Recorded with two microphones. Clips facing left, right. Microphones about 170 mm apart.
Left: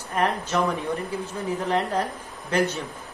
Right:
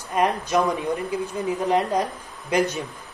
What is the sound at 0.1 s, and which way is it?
A man's voice, 15° right (ahead or behind).